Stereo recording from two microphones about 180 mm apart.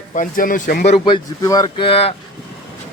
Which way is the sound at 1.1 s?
20° left (ahead or behind).